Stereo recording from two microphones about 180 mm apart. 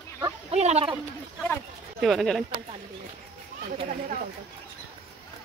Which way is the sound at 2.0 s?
Centre (ahead or behind).